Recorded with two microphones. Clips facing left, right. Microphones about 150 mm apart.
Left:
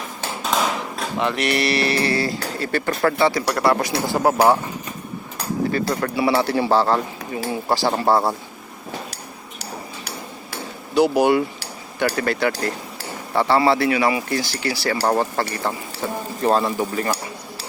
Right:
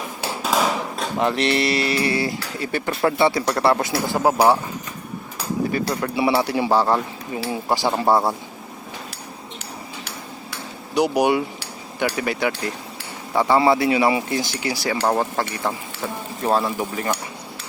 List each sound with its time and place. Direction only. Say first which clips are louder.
0.2 s hammer: right 1 dB; 5° right (ahead or behind)
1.2 s speech: right 2 dB; 35° right (ahead or behind)
1.5 s speech: even; 20° right (ahead or behind)
3.9 s speech: left 1 dB; 15° left (ahead or behind)
4.2 s speech: even; 10° right (ahead or behind)
5.7 s speech: left 1 dB; 15° right (ahead or behind)
10.9 s speech: left 2 dB; 15° right (ahead or behind)
15.0 s speech: left 1 dB; centre (ahead or behind)